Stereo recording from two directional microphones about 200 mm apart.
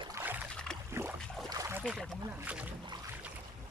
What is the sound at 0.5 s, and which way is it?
Boat, 5° left (ahead or behind).